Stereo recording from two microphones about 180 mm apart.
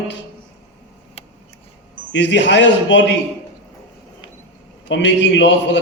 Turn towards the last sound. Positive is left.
turn(degrees=85)